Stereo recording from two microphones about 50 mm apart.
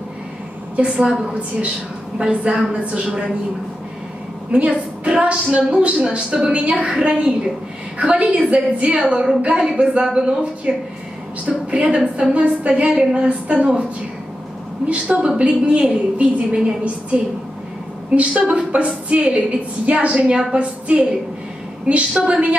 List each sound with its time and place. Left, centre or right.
0.7 s a woman's voice: centre
4.5 s a woman's voice: right
12.9 s a woman's voice: centre
14.9 s a woman's voice: right